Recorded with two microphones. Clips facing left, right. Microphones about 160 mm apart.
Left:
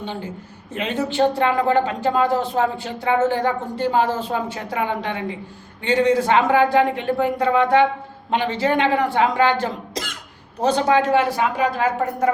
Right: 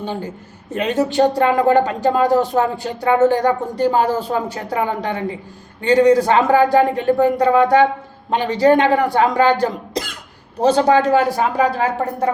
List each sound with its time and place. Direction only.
0.8 s speech: 40° right (ahead or behind)